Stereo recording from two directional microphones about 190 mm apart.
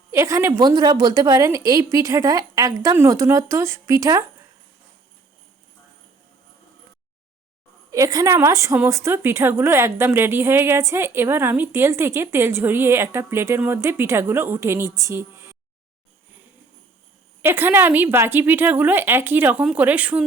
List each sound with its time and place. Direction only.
0.1 s a woman's voice: 15° right (ahead or behind)
7.9 s a woman's voice: 15° right (ahead or behind)
17.4 s a woman's voice: 10° right (ahead or behind)